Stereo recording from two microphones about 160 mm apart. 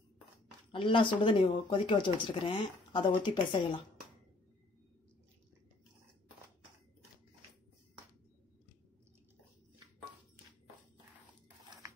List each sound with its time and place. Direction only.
0.7 s speech: 30° left (ahead or behind)